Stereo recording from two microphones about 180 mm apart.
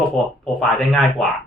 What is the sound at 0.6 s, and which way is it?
Speech, centre (ahead or behind).